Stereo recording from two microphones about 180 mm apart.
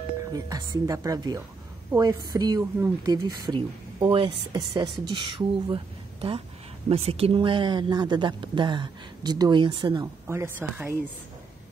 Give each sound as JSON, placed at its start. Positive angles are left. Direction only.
{"t": 0.3, "sound": "speech", "side_deg": -20}
{"t": 6.9, "sound": "speech", "side_deg": -35}
{"t": 10.2, "sound": "speech", "side_deg": -15}